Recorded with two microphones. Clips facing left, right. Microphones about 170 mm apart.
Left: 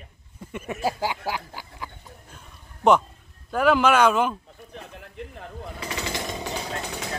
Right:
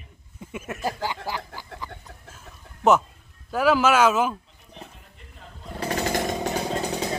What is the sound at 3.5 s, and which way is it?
Speech, 5° right (ahead or behind).